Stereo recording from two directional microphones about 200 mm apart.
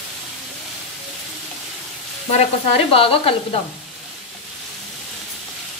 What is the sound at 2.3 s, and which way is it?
Sizzle, 30° left (ahead or behind).